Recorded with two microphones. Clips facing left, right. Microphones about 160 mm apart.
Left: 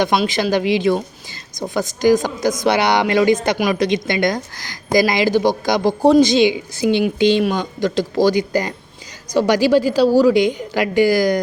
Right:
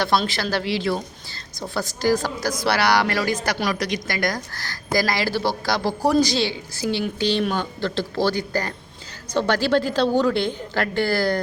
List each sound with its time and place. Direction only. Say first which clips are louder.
0.0 s a woman's voice: left 5 dB; 20° left (ahead or behind)